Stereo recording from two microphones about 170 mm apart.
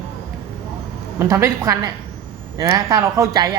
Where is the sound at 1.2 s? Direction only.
15° right (ahead or behind).